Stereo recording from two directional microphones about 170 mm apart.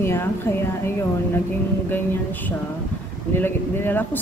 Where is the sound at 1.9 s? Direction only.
10° left (ahead or behind).